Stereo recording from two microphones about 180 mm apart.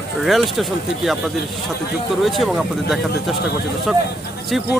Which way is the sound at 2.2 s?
Centre (ahead or behind).